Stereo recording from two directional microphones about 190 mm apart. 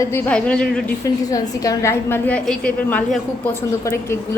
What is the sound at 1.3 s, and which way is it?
A woman's voice, 20° left (ahead or behind).